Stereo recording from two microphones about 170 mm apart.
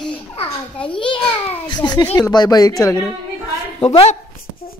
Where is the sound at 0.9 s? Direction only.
30° left (ahead or behind).